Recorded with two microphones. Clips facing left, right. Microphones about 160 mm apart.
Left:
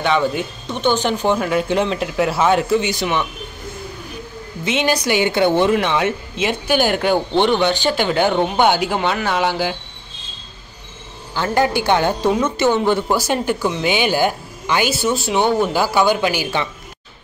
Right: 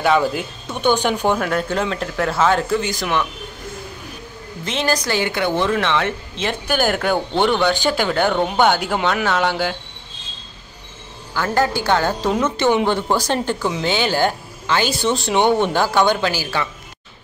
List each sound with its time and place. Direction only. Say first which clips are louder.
0.0 s speech: right 1 dB; 5° right (ahead or behind)
1.4 s speech: left 3 dB; 5° left (ahead or behind)
5.0 s a woman's voice: left 4 dB; 20° left (ahead or behind)
5.7 s speech: left 2 dB; 15° left (ahead or behind)
6.3 s speech: left 3 dB; 5° left (ahead or behind)
11.3 s speech: left 2 dB; 20° left (ahead or behind)
12.6 s speech: left 1 dB; 15° right (ahead or behind)
12.9 s speech: left 1 dB; 10° left (ahead or behind)